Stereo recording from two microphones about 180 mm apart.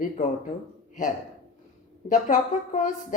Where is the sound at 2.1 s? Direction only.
45° left (ahead or behind).